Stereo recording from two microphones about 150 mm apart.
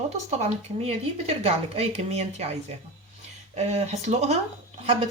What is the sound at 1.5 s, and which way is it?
Speech, 40° right (ahead or behind).